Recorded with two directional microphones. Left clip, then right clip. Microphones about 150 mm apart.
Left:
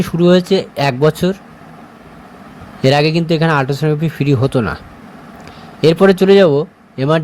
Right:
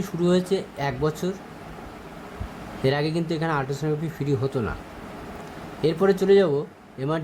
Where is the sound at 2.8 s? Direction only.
50° left (ahead or behind).